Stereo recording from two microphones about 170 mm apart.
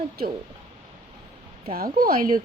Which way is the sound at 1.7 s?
55° right (ahead or behind).